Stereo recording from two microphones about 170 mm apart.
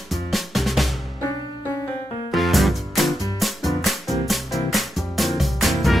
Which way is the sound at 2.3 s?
Centre (ahead or behind).